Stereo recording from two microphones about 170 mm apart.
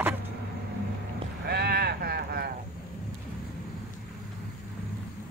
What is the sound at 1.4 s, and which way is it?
Sheep, 70° right (ahead or behind).